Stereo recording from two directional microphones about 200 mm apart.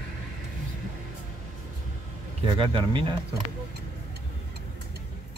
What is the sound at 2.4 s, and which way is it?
Speech, 25° right (ahead or behind).